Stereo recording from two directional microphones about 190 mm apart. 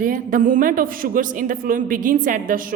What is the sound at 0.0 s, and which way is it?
Speech, 45° right (ahead or behind).